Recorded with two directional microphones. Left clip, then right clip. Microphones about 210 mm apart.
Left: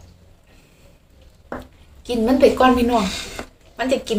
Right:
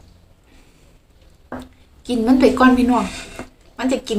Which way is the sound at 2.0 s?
20° right (ahead or behind).